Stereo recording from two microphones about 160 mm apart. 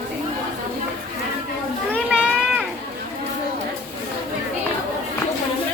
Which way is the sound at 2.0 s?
5° right (ahead or behind).